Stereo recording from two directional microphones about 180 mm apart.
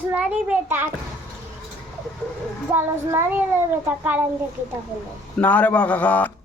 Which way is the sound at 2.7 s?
15° right (ahead or behind).